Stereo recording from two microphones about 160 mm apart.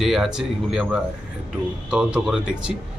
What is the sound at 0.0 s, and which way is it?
A man's voice, centre (ahead or behind).